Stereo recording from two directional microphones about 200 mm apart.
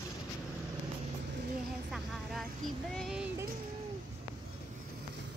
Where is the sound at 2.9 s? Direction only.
Centre (ahead or behind).